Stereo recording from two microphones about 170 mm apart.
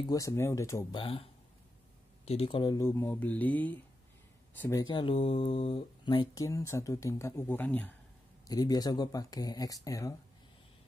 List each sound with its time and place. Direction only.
0.0 s speech: 20° left (ahead or behind)
0.9 s speech: 35° left (ahead or behind); by 7.9 s 10° left (ahead or behind)
8.5 s speech: 20° left (ahead or behind)